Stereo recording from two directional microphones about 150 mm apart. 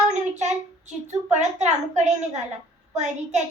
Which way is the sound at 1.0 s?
50° right (ahead or behind).